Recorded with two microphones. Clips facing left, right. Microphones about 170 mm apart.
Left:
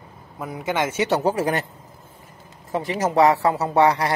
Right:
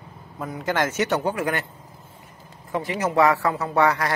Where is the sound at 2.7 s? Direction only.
35° left (ahead or behind).